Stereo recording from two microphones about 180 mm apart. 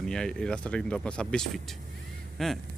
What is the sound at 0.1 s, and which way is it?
Speech, 5° left (ahead or behind).